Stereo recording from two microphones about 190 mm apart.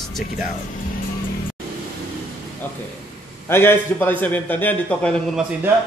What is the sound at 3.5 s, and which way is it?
A man's voice, 10° left (ahead or behind).